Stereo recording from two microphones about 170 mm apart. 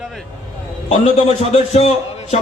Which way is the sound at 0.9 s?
40° left (ahead or behind).